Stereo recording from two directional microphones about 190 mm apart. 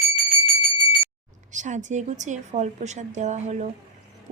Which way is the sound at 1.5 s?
40° right (ahead or behind).